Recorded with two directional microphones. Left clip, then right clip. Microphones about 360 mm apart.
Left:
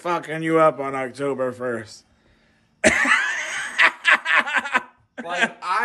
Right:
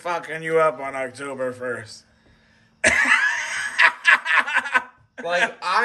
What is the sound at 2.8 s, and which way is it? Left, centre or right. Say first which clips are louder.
Snicker: even; centre.